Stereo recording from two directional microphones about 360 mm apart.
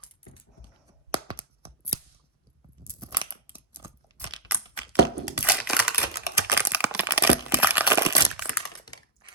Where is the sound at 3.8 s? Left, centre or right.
Centre.